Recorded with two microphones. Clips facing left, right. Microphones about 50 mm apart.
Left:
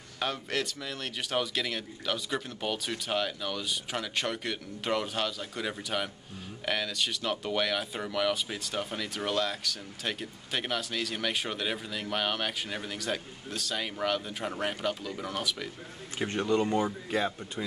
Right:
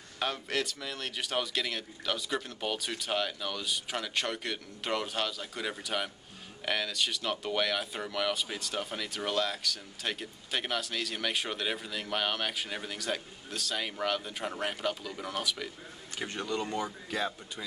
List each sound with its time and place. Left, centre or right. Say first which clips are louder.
0.2 s speech: left 1 dB; centre
16.3 s speech: left 7 dB; left